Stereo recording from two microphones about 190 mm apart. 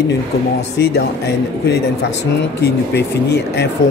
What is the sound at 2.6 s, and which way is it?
A man's voice, 60° left (ahead or behind).